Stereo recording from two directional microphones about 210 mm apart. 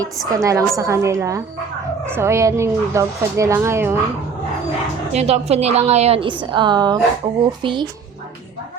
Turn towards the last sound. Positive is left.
turn(degrees=-25)  # may be behind; listen again after turning